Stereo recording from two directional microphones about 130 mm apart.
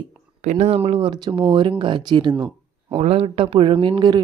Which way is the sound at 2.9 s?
50° right (ahead or behind).